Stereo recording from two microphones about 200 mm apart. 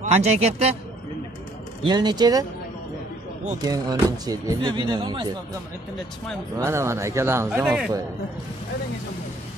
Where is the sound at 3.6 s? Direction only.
20° right (ahead or behind).